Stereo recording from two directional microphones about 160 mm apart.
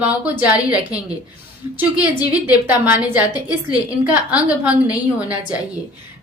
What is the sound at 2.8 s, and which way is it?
A woman's voice, 10° right (ahead or behind).